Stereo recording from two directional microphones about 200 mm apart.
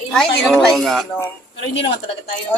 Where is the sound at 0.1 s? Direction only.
Centre (ahead or behind).